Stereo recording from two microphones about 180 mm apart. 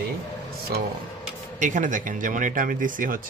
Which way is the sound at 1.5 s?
45° right (ahead or behind).